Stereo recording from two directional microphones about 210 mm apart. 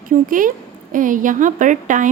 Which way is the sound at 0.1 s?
40° right (ahead or behind).